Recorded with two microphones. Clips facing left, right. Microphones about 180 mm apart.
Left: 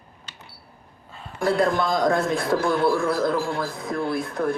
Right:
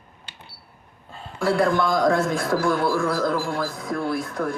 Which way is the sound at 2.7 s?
20° left (ahead or behind).